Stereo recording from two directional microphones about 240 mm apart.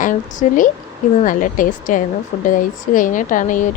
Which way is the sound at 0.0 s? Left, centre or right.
Left.